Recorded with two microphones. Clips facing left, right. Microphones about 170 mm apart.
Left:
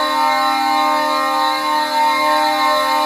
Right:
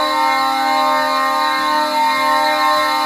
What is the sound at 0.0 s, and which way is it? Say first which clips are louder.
Siren: even; centre (ahead or behind).